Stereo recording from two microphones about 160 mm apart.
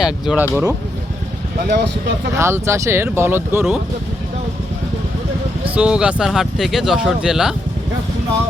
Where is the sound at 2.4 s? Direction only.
15° right (ahead or behind).